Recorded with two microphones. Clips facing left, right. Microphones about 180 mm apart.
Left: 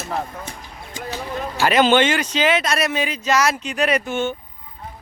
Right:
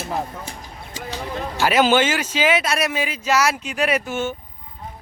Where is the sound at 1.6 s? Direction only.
5° right (ahead or behind).